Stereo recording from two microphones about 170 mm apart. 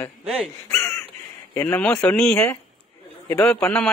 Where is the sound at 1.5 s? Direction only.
10° left (ahead or behind).